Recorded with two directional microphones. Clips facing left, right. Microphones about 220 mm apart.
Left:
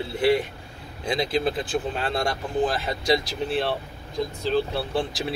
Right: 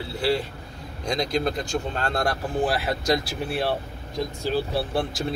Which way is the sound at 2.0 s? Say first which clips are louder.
Right 1 dB; centre (ahead or behind).